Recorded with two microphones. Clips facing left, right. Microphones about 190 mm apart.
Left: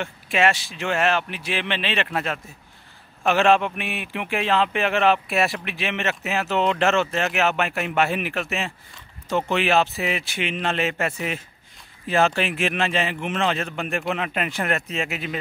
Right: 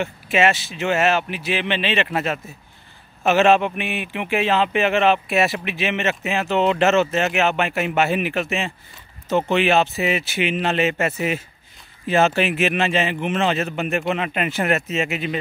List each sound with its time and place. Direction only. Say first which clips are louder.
0.0 s speech: right 3 dB; 5° right (ahead or behind)